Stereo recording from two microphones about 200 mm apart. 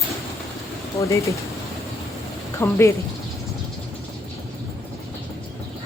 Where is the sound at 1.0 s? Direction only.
15° left (ahead or behind).